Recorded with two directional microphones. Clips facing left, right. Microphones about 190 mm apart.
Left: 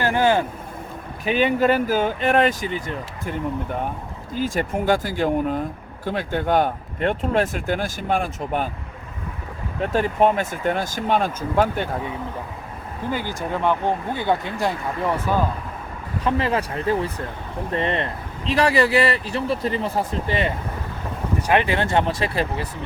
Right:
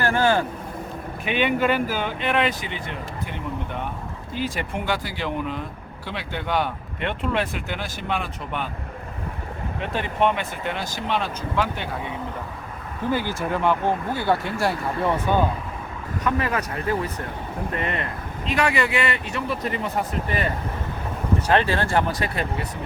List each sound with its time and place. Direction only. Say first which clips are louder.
0.0 s vehicle: left 2 dB; 20° left (ahead or behind)
1.2 s speech: left 3 dB; 40° left (ahead or behind)
9.8 s speech: left 4 dB; 40° left (ahead or behind)
13.1 s speech: right 2 dB; 15° left (ahead or behind)
16.2 s speech: left 3 dB; 30° left (ahead or behind)
21.4 s speech: left 2 dB; 15° left (ahead or behind)